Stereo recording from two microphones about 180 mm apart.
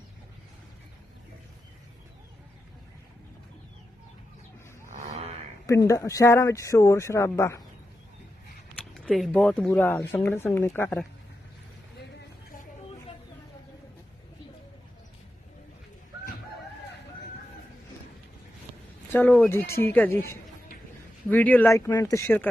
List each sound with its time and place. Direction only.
5.6 s speech: 15° left (ahead or behind)
8.8 s speech: centre (ahead or behind)
19.1 s speech: 10° left (ahead or behind)